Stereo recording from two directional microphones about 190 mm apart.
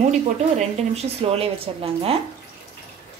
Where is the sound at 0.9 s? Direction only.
35° right (ahead or behind).